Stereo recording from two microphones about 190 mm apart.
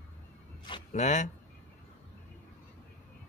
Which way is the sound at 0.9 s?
40° left (ahead or behind).